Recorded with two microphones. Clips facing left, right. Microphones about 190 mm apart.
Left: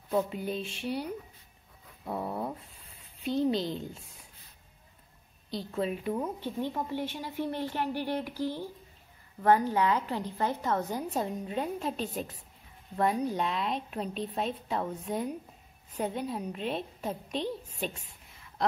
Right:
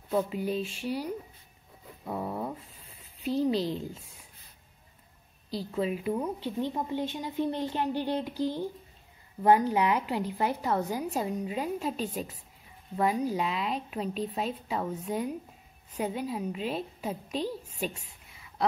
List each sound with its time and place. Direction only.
0.1 s a woman's voice: centre (ahead or behind)
2.2 s a sound: 5° left (ahead or behind)
3.3 s a woman's voice: centre (ahead or behind)
5.5 s a woman's voice: 5° right (ahead or behind)
6.7 s a woman's voice: 20° right (ahead or behind)